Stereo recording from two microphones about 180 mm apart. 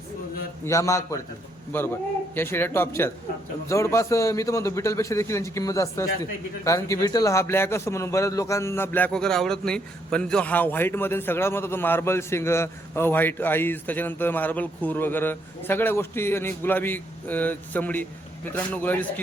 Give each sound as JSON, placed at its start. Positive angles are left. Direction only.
{"t": 0.6, "sound": "a man's voice", "side_deg": 15}